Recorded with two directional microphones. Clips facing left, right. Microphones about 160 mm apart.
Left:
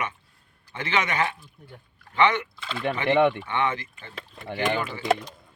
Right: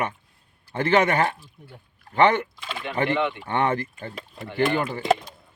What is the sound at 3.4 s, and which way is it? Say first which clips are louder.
Speech: right 3 dB; 45° right (ahead or behind).